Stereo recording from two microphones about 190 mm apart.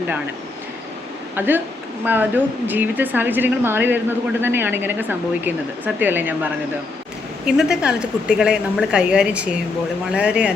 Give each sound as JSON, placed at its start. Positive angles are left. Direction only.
{"t": 1.4, "sound": "a woman's voice", "side_deg": -10}